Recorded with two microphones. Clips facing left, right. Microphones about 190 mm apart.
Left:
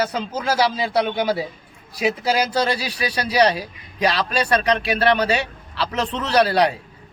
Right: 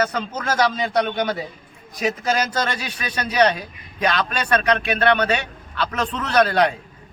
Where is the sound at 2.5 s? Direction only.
35° left (ahead or behind).